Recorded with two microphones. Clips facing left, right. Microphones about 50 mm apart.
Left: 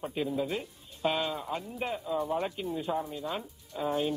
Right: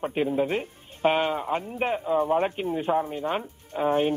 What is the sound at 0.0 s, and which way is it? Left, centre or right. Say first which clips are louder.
Speech: right 7 dB; right.